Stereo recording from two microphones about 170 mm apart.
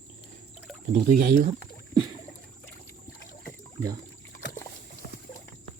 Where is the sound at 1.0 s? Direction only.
55° right (ahead or behind).